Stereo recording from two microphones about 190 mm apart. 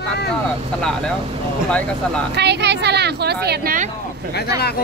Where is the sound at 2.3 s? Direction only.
65° right (ahead or behind); by 3.9 s 45° right (ahead or behind).